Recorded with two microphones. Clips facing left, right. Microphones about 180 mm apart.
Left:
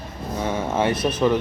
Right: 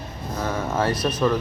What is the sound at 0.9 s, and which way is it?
Speech, 25° left (ahead or behind).